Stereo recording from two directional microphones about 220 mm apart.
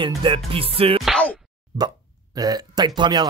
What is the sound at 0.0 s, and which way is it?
Speech, 20° right (ahead or behind).